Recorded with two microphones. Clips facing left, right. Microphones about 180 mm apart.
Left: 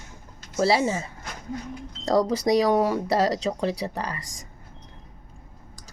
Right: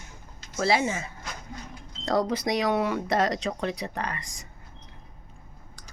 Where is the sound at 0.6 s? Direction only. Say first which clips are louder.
Left 3 dB; 35° left (ahead or behind).